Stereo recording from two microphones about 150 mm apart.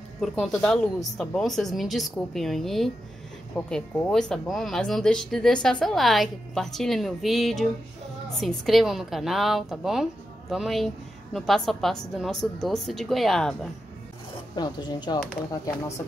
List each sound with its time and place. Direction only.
0.2 s speech: centre (ahead or behind)
14.5 s speech: 30° left (ahead or behind)